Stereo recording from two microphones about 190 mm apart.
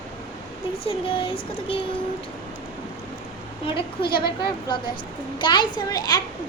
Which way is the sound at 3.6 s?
25° left (ahead or behind).